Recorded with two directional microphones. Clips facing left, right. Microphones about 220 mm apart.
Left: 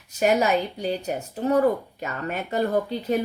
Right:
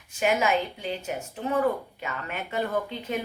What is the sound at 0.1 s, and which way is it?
Speech, 40° left (ahead or behind).